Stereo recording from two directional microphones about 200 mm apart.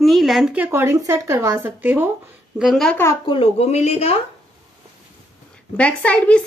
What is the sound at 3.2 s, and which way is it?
Speech, 25° left (ahead or behind).